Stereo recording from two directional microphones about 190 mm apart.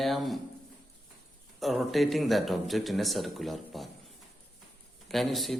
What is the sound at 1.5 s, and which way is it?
Speech, centre (ahead or behind).